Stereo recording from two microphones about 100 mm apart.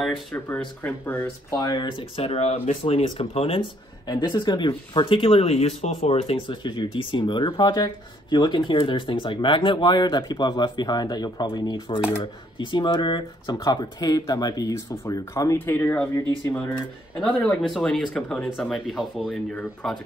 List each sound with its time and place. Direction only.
0.5 s speech: 20° left (ahead or behind)
1.6 s speech: 45° left (ahead or behind); by 3.6 s 70° left (ahead or behind)
4.1 s speech: 50° left (ahead or behind); by 6.4 s 85° left
6.4 s speech: 55° left (ahead or behind); by 15.6 s 35° left (ahead or behind)
15.6 s speech: 20° left (ahead or behind)
17.2 s speech: 5° left (ahead or behind)